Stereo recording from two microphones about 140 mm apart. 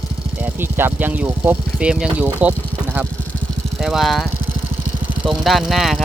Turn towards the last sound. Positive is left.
turn(degrees=0)  # may be behind; listen again after turning